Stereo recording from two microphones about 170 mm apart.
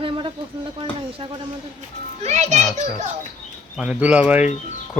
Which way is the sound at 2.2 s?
45° right (ahead or behind).